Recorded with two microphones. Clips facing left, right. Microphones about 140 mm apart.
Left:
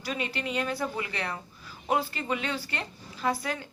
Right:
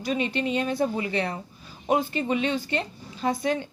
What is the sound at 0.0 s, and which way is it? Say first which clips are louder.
A woman's voice: right 7 dB; 25° right (ahead or behind).